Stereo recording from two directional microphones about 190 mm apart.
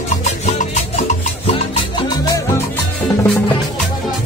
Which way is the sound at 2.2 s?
15° left (ahead or behind).